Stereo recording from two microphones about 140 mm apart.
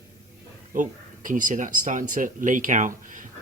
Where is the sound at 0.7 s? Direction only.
70° right (ahead or behind).